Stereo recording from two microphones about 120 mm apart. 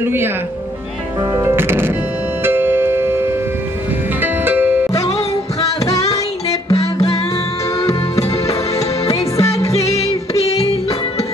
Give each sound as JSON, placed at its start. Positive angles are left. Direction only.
{"t": 0.0, "sound": "speech", "side_deg": -20}
{"t": 1.4, "sound": "music", "side_deg": -20}
{"t": 6.7, "sound": "music", "side_deg": 30}
{"t": 8.5, "sound": "music", "side_deg": 60}
{"t": 9.4, "sound": "music", "side_deg": 25}
{"t": 9.8, "sound": "music", "side_deg": 65}